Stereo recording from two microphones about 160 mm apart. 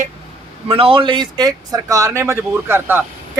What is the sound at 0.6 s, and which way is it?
Speech, 35° right (ahead or behind).